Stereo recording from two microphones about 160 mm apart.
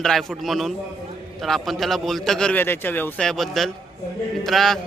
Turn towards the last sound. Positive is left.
turn(degrees=0)  # may be behind; listen again after turning